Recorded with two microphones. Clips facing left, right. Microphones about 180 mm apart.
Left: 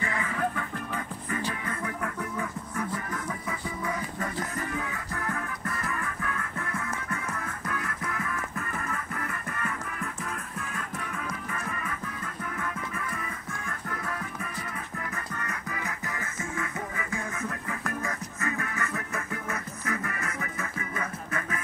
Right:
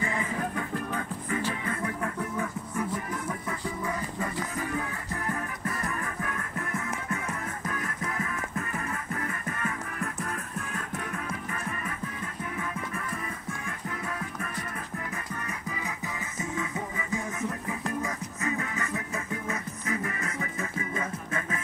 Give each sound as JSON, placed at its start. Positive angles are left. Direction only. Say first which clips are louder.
{"t": 0.0, "sound": "music", "louder": "right 1 dB", "side_deg": -25}
{"t": 3.4, "sound": "music", "louder": "right 1 dB", "side_deg": 0}
{"t": 16.1, "sound": "music", "louder": "right 1 dB", "side_deg": -15}